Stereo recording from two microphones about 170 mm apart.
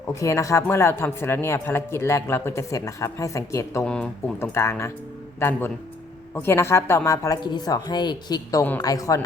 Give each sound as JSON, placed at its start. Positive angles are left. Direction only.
{"t": 0.1, "sound": "speech", "side_deg": 15}
{"t": 3.8, "sound": "a woman's voice", "side_deg": 5}